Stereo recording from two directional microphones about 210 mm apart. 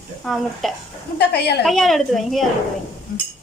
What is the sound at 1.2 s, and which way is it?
Speech, 50° left (ahead or behind).